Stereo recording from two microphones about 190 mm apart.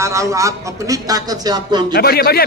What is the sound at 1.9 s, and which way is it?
Speech, 55° left (ahead or behind).